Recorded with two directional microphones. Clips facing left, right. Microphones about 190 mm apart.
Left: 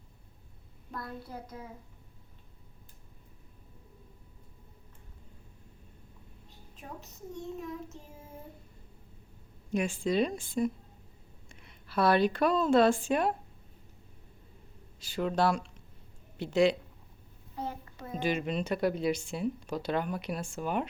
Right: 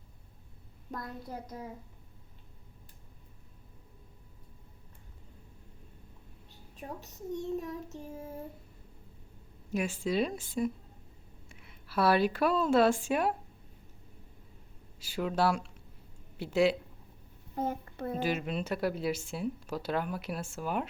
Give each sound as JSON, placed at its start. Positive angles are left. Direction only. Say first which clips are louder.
{"t": 0.9, "sound": "speech", "louder": "even", "side_deg": -20}
{"t": 9.7, "sound": "speech", "louder": "left 2 dB", "side_deg": -5}
{"t": 14.9, "sound": "speech", "louder": "left 1 dB", "side_deg": -10}
{"t": 17.5, "sound": "a child's voice", "louder": "right 5 dB", "side_deg": -50}
{"t": 18.2, "sound": "speech", "louder": "left 3 dB", "side_deg": -5}